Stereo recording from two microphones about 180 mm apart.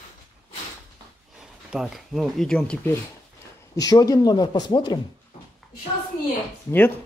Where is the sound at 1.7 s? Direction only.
Centre (ahead or behind).